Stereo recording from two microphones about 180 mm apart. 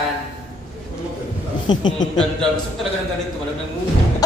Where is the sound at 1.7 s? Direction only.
25° left (ahead or behind).